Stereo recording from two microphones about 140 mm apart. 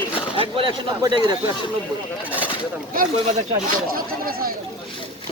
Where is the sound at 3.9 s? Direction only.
90° right.